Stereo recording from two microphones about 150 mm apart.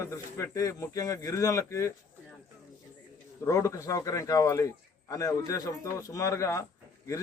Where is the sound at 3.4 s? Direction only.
20° left (ahead or behind).